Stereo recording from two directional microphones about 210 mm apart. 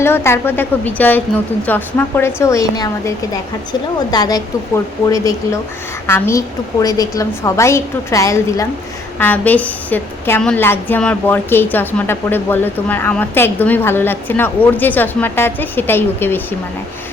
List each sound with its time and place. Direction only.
0.0 s a woman's voice: 10° left (ahead or behind)